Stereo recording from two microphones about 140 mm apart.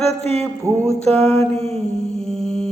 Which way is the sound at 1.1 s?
45° right (ahead or behind).